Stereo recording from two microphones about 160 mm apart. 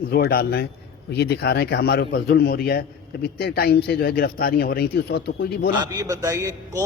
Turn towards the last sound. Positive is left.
turn(degrees=-20)  # may be behind; listen again after turning